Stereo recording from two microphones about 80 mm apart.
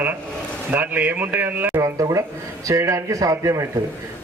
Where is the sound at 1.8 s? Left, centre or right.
Right.